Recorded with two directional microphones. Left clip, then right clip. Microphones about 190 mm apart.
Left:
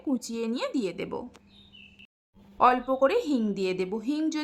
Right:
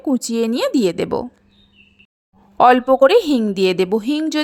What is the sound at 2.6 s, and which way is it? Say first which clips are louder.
Speech: right 11 dB; 40° right (ahead or behind).